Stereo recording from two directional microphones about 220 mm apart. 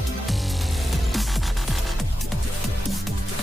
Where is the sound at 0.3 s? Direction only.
Centre (ahead or behind).